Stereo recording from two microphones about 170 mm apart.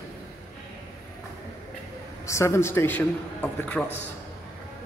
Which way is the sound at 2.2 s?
15° left (ahead or behind).